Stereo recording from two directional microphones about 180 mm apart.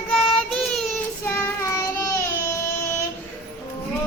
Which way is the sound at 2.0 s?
15° left (ahead or behind).